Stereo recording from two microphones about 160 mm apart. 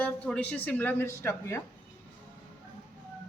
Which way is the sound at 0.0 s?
10° left (ahead or behind).